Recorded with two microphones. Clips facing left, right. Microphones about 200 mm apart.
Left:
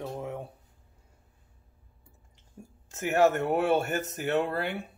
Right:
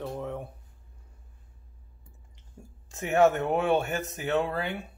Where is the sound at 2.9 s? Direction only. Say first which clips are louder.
Right 1 dB; centre (ahead or behind).